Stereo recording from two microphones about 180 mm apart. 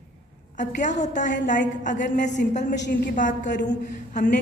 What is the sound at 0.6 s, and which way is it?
A woman's voice, 45° left (ahead or behind).